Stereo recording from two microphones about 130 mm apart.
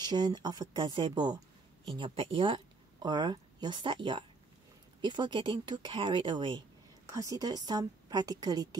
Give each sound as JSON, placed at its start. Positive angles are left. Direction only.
{"t": 0.0, "sound": "speech", "side_deg": -30}
{"t": 7.1, "sound": "speech", "side_deg": -25}